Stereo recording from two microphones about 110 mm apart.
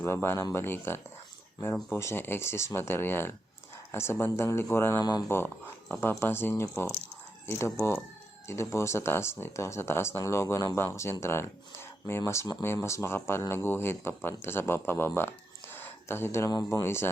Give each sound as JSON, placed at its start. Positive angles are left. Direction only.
{"t": 0.0, "sound": "speech", "side_deg": 25}
{"t": 4.9, "sound": "speech", "side_deg": 40}
{"t": 5.9, "sound": "speech", "side_deg": 20}
{"t": 15.7, "sound": "a sound", "side_deg": 20}
{"t": 16.5, "sound": "speech", "side_deg": 35}